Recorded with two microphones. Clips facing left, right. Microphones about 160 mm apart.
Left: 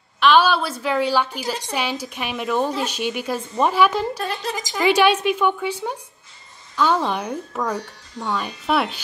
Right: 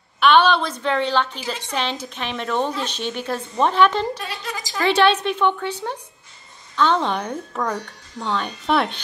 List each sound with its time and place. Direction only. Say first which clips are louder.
0.2 s a sound: even; 5° left (ahead or behind)
1.7 s speech: even; 10° left (ahead or behind)
4.2 s speech: left 5 dB; 45° left (ahead or behind)
4.6 s speech: left 1 dB; 15° left (ahead or behind)